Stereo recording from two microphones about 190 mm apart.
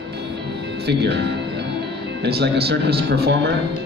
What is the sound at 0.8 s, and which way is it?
A man's voice, 60° right (ahead or behind).